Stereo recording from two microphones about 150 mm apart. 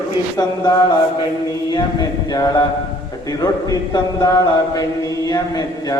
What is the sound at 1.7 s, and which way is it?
A man's voice, 30° left (ahead or behind).